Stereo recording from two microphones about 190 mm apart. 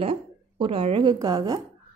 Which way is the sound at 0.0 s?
30° right (ahead or behind).